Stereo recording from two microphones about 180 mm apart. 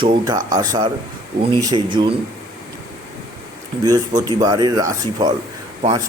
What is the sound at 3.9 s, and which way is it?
Speech, 20° right (ahead or behind).